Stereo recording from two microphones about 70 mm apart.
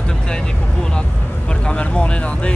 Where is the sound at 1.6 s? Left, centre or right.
Centre.